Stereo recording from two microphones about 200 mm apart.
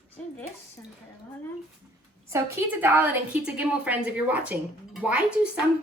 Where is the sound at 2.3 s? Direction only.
10° right (ahead or behind).